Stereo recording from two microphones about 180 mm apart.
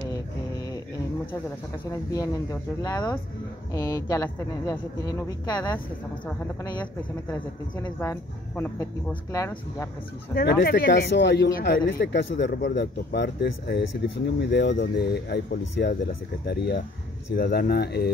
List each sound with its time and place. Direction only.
1.9 s speech: 15° left (ahead or behind)
7.7 s speech: 20° left (ahead or behind)
10.3 s speech: 60° left (ahead or behind)